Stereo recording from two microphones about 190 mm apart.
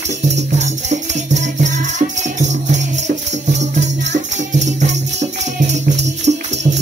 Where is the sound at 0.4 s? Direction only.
35° right (ahead or behind).